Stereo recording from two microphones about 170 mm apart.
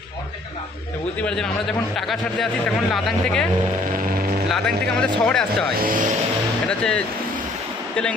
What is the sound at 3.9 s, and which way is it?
Speech, 60° right (ahead or behind).